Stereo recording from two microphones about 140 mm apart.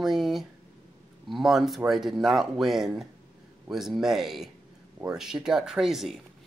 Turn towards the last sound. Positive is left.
turn(degrees=0)  # may be behind; listen again after turning